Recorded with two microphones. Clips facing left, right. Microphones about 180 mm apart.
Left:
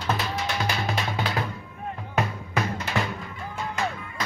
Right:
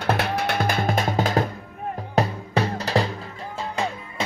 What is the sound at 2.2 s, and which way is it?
Music, 35° right (ahead or behind).